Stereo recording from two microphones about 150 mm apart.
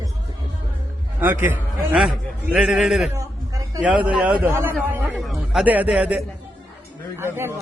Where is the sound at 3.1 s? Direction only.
20° right (ahead or behind).